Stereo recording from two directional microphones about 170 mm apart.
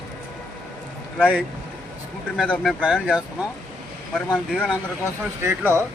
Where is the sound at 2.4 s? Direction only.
5° left (ahead or behind).